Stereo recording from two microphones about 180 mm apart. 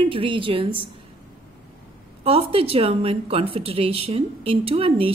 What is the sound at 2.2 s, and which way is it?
A woman's voice, 30° right (ahead or behind).